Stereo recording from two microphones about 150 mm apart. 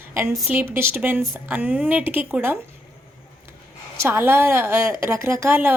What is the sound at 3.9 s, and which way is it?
A woman's voice, 15° right (ahead or behind).